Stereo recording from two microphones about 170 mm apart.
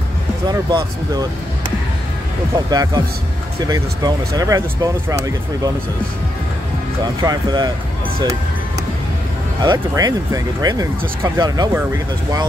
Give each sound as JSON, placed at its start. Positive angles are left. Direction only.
{"t": 0.5, "sound": "speech", "side_deg": -25}
{"t": 2.7, "sound": "speech", "side_deg": -20}
{"t": 7.2, "sound": "speech", "side_deg": -25}
{"t": 9.6, "sound": "speech", "side_deg": -25}